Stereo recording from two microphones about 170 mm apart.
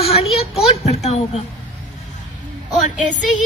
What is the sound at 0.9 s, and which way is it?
Speech, 40° left (ahead or behind).